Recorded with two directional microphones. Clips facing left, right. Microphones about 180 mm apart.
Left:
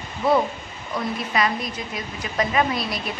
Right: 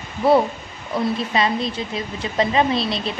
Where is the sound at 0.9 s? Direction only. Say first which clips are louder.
Right 4 dB; 25° right (ahead or behind).